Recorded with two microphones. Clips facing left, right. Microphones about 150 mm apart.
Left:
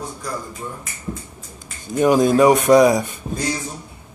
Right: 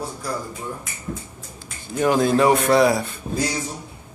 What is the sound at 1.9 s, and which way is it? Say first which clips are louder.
Speech: left 4 dB; 15° left (ahead or behind).